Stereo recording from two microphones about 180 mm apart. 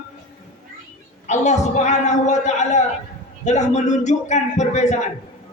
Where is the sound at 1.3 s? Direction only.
40° left (ahead or behind).